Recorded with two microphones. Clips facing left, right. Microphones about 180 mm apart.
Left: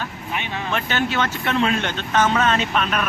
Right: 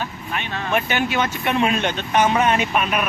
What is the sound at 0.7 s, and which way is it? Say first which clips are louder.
Speech: right 2 dB; 15° right (ahead or behind).